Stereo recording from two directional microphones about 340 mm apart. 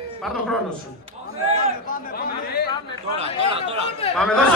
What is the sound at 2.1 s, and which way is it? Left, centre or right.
Chatter, left.